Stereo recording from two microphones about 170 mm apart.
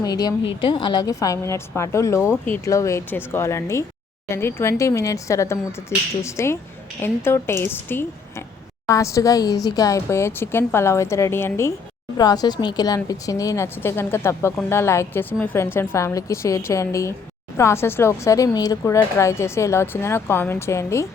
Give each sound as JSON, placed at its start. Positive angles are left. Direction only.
{"t": 0.0, "sound": "a woman's voice", "side_deg": 20}